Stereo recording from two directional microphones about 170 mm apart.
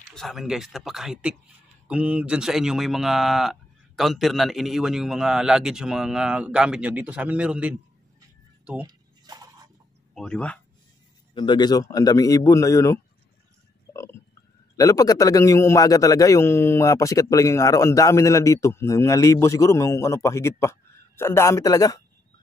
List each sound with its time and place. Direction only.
0.1 s speech: centre (ahead or behind)
8.8 s a sound: 25° right (ahead or behind)
10.1 s speech: 5° left (ahead or behind)
11.3 s a man's voice: 25° left (ahead or behind)
14.8 s a man's voice: 20° left (ahead or behind)